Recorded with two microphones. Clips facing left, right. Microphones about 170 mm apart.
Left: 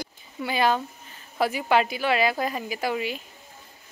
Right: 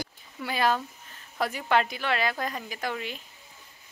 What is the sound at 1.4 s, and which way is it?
A woman's voice, 5° left (ahead or behind).